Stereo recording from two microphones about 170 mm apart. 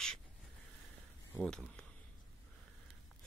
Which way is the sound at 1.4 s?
5° left (ahead or behind).